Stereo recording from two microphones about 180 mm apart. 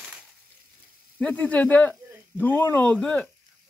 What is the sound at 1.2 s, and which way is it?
Speech, 10° left (ahead or behind).